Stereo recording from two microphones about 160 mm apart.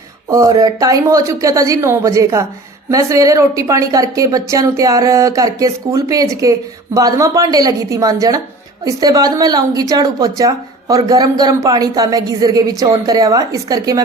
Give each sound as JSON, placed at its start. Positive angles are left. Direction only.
{"t": 0.3, "sound": "speech", "side_deg": -20}